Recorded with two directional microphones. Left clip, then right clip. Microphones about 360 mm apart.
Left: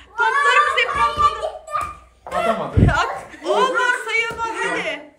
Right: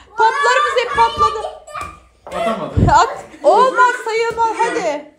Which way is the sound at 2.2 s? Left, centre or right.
Centre.